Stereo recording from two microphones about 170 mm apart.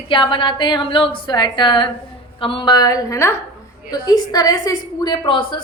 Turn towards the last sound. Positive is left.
turn(degrees=30)  # may be behind; listen again after turning